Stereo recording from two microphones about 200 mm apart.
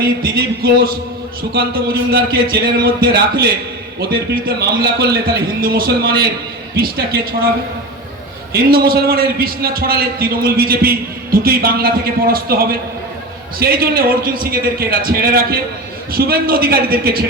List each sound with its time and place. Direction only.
0.0 s a man's voice: 50° right (ahead or behind)
8.7 s a man's voice: 50° right (ahead or behind)